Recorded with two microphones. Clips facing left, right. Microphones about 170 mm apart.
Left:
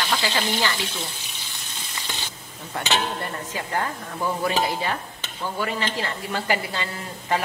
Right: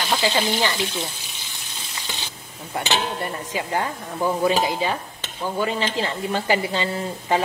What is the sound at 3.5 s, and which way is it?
Speech, 20° right (ahead or behind).